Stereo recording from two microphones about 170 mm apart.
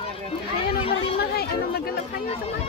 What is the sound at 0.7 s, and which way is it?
Speech, 35° left (ahead or behind).